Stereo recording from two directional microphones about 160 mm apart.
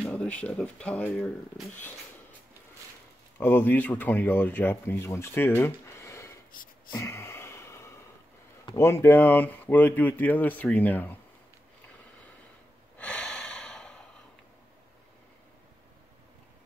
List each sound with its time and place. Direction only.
0.0 s speech: 5° left (ahead or behind)
3.3 s speech: 15° left (ahead or behind)
5.6 s a sound: 15° left (ahead or behind)
6.9 s gasp: 15° left (ahead or behind)
8.6 s speech: 15° left (ahead or behind)
12.9 s snort: 5° left (ahead or behind)